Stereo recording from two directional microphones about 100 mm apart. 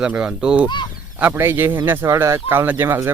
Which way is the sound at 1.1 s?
20° right (ahead or behind).